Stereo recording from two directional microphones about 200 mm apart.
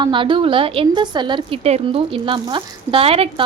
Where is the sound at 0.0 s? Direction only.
25° right (ahead or behind).